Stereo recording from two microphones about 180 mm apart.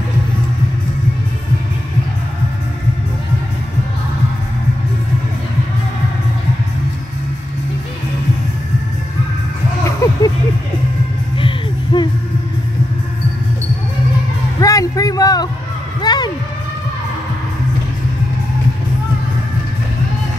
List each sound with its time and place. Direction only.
10.0 s vehicle: 20° left (ahead or behind)
11.3 s music: 25° left (ahead or behind)
14.6 s a sound: 20° left (ahead or behind)